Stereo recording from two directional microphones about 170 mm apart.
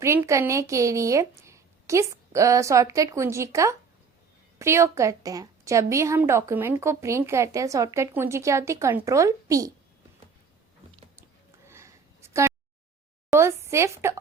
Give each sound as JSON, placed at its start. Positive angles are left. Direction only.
{"t": 0.0, "sound": "a woman's voice", "side_deg": -15}
{"t": 11.6, "sound": "a sound", "side_deg": -15}
{"t": 13.3, "sound": "a woman's voice", "side_deg": -15}